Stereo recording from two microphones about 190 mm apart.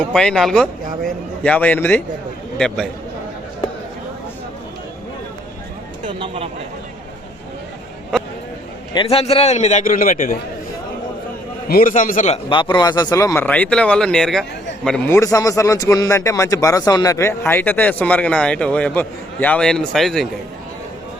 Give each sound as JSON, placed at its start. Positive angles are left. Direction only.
{"t": 0.0, "sound": "a man's voice", "side_deg": 5}
{"t": 6.1, "sound": "speech", "side_deg": -25}
{"t": 8.1, "sound": "a sound", "side_deg": 5}
{"t": 9.0, "sound": "a man's voice", "side_deg": 30}
{"t": 11.7, "sound": "a man's voice", "side_deg": 45}
{"t": 12.5, "sound": "a man's voice", "side_deg": 25}